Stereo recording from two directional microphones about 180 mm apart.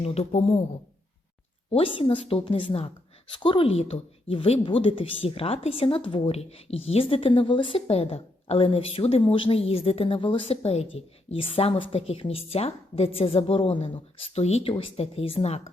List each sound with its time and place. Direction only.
0.0 s a woman's voice: 35° left (ahead or behind)
1.7 s a woman's voice: 30° left (ahead or behind)